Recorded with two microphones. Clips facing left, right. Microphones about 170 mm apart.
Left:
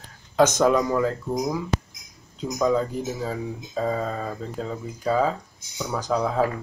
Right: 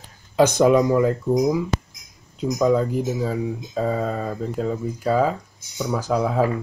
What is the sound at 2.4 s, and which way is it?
Speech, 5° right (ahead or behind).